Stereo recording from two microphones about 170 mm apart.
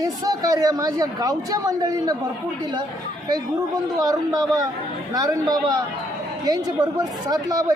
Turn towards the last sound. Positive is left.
turn(degrees=-25)  # may be behind; listen again after turning